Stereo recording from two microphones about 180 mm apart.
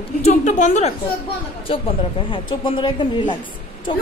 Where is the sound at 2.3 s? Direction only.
25° left (ahead or behind).